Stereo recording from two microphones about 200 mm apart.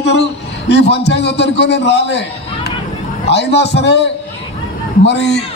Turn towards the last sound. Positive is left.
turn(degrees=60)  # may be behind; listen again after turning